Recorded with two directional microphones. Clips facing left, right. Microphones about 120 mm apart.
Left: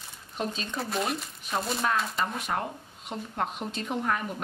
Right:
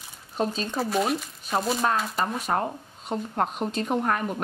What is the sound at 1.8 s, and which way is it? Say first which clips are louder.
A woman's voice: right 3 dB; 40° right (ahead or behind).